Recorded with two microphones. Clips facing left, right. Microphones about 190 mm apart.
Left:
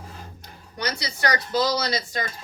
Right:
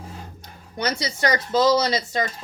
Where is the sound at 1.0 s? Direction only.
25° right (ahead or behind).